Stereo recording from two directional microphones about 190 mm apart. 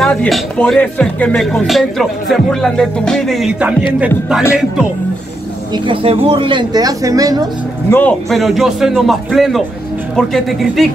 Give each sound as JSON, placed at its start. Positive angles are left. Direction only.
{"t": 0.0, "sound": "speech", "side_deg": 5}
{"t": 5.9, "sound": "speech", "side_deg": -30}
{"t": 7.9, "sound": "speech", "side_deg": 5}